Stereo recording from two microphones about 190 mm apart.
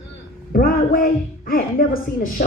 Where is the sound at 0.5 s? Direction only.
50° left (ahead or behind).